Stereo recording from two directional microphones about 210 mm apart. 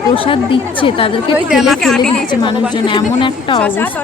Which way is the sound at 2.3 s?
20° left (ahead or behind).